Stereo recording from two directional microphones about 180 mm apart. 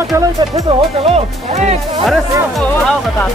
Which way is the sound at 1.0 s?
35° right (ahead or behind).